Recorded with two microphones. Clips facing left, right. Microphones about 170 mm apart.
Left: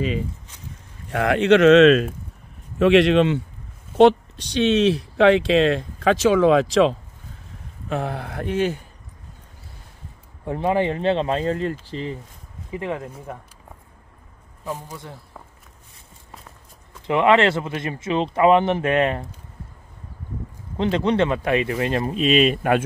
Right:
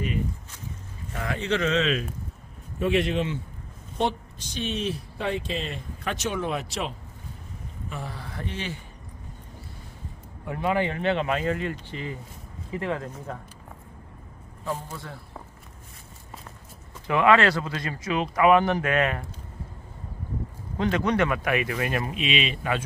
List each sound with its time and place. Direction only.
1.1 s speech: 75° left (ahead or behind)
2.8 s a man's voice: 85° left
7.9 s speech: 65° left (ahead or behind)
10.4 s speech: 30° left (ahead or behind)
12.7 s speech: 15° left (ahead or behind)
14.6 s speech: 15° left (ahead or behind)
17.0 s speech: 20° left (ahead or behind)
20.7 s speech: 25° left (ahead or behind); by 22.8 s 50° left (ahead or behind)